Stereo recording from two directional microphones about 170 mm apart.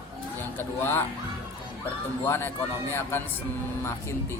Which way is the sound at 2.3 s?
15° left (ahead or behind).